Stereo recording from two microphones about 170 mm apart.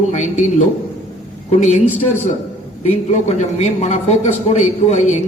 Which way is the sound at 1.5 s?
45° left (ahead or behind).